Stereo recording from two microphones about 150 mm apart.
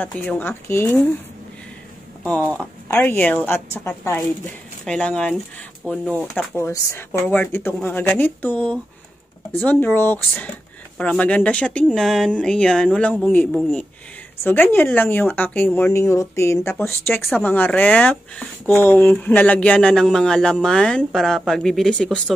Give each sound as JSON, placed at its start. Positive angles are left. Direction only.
{"t": 0.0, "sound": "speech", "side_deg": 10}
{"t": 2.9, "sound": "speech", "side_deg": 15}
{"t": 4.8, "sound": "speech", "side_deg": 5}